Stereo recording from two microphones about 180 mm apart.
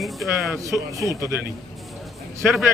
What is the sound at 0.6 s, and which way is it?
Speech, 15° right (ahead or behind).